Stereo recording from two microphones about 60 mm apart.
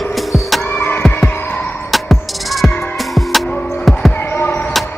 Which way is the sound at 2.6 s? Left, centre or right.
Centre.